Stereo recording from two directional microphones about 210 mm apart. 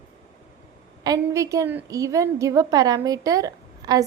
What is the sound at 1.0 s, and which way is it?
A woman's voice, 15° right (ahead or behind).